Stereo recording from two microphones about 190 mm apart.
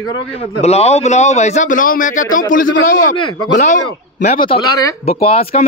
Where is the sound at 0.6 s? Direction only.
35° left (ahead or behind).